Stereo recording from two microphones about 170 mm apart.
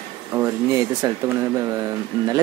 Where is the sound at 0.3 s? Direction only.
15° right (ahead or behind).